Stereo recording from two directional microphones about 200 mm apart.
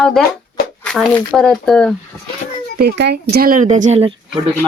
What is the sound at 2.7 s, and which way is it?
Speech, 55° right (ahead or behind).